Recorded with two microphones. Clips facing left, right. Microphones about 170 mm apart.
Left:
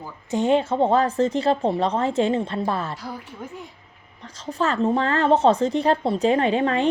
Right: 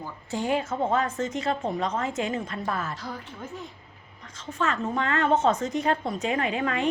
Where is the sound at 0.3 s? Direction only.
20° left (ahead or behind).